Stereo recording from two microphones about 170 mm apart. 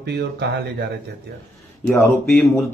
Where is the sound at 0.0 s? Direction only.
80° right.